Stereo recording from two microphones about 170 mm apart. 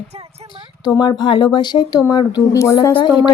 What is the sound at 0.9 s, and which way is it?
A woman's voice, 25° left (ahead or behind).